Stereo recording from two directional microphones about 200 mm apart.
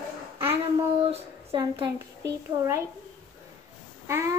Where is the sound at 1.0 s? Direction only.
30° right (ahead or behind).